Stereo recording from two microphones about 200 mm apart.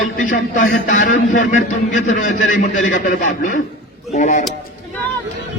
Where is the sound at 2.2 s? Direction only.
40° left (ahead or behind).